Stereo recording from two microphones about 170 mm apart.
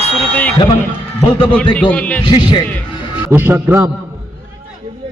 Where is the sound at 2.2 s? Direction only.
30° left (ahead or behind).